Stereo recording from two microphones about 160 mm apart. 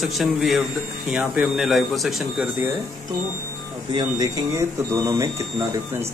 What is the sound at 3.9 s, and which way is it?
Speech, 25° right (ahead or behind).